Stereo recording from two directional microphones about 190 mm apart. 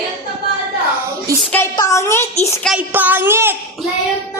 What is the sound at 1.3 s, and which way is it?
Speech, 15° right (ahead or behind).